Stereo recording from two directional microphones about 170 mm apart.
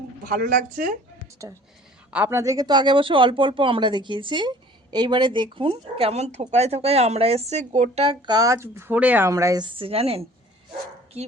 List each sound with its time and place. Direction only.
0.3 s speech: 55° right (ahead or behind)
2.0 s a woman's voice: 10° right (ahead or behind); by 11.3 s 40° right (ahead or behind)